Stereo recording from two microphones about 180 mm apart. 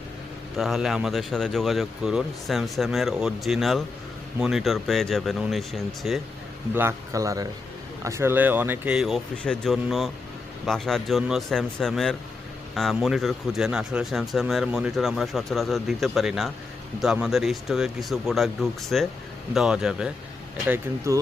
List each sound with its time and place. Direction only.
0.5 s speech: centre (ahead or behind)
6.7 s speech: 15° right (ahead or behind)
20.7 s speech: 15° right (ahead or behind)